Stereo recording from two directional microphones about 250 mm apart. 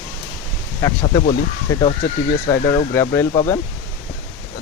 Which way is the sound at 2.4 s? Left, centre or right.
Centre.